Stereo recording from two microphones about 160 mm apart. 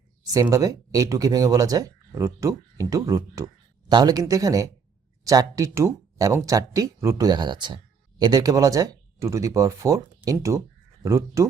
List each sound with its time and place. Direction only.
0.4 s speech: 20° right (ahead or behind)